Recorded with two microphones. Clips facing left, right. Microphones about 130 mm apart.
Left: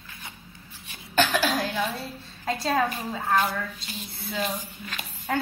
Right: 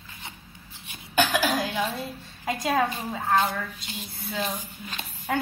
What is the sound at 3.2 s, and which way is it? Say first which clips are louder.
Speech: right 1 dB; 25° right (ahead or behind).